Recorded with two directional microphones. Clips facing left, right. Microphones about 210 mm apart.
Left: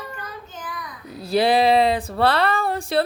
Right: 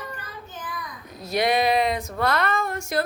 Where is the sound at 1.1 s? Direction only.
30° left (ahead or behind).